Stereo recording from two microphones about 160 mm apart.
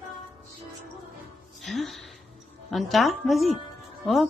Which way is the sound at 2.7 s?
Centre (ahead or behind).